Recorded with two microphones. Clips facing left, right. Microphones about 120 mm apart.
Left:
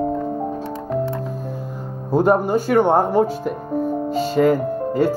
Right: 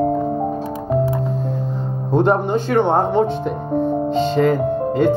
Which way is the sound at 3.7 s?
25° right (ahead or behind).